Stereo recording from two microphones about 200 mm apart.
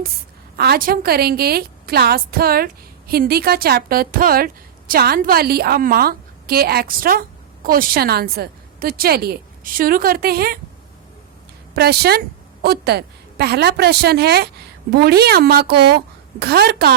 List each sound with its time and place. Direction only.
0.5 s a woman's voice: 50° right (ahead or behind)
11.7 s a woman's voice: 55° right (ahead or behind)